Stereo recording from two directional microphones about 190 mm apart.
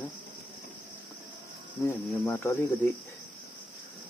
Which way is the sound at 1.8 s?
15° left (ahead or behind).